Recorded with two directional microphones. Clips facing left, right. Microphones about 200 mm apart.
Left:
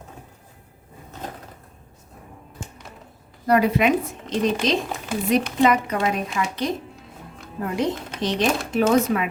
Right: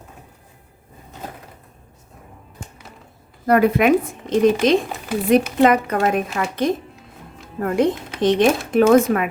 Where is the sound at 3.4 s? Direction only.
55° right (ahead or behind).